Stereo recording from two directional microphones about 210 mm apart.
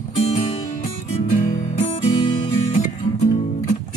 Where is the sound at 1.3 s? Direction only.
40° left (ahead or behind).